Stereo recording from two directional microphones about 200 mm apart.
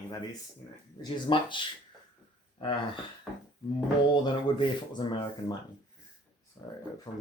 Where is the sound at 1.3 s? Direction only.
25° left (ahead or behind).